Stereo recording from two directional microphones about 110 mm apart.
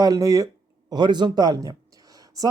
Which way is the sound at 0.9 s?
40° right (ahead or behind).